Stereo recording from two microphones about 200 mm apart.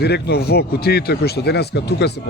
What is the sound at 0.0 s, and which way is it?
Speech, 55° left (ahead or behind).